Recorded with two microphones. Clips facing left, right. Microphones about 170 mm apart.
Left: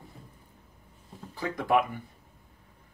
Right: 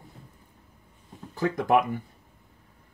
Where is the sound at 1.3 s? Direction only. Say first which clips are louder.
Right 3 dB; 45° right (ahead or behind).